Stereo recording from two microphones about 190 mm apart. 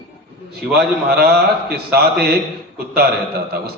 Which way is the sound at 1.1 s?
55° right (ahead or behind).